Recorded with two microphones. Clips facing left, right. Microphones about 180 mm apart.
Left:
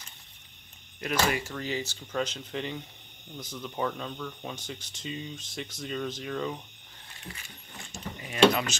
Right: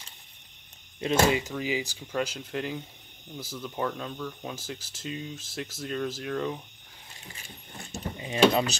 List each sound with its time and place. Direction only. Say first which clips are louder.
1.2 s speech: right 4 dB; 20° right (ahead or behind); by 6.6 s centre (ahead or behind)
7.4 s a sound: right 3 dB; 35° right (ahead or behind)
8.2 s mechanisms: right 1 dB; 25° right (ahead or behind)